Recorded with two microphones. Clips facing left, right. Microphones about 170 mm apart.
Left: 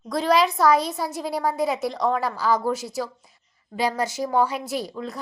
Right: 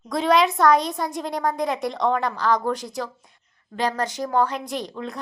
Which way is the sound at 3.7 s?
10° left (ahead or behind).